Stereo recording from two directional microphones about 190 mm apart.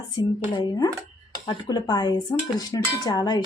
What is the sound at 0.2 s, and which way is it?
Dishes, 20° left (ahead or behind).